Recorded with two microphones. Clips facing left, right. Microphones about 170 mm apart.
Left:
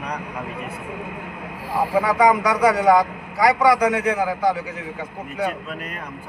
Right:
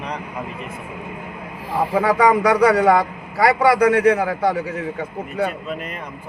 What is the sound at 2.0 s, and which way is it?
A man's voice, 60° right (ahead or behind).